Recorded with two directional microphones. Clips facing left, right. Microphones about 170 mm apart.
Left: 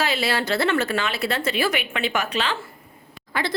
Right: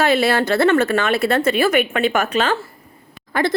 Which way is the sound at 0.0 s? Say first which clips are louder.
Right 7 dB; 50° right (ahead or behind).